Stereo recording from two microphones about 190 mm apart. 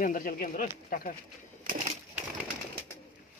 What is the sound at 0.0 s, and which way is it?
Speech, 45° left (ahead or behind).